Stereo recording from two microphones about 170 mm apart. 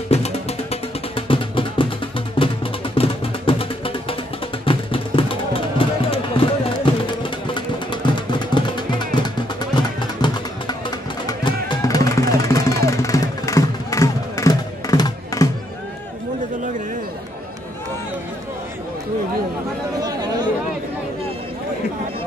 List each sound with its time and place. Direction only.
0.1 s music: 35° left (ahead or behind); by 15.4 s 20° left (ahead or behind)
20.0 s chatter: 25° right (ahead or behind)